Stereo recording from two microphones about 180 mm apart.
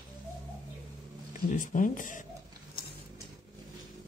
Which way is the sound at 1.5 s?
45° left (ahead or behind).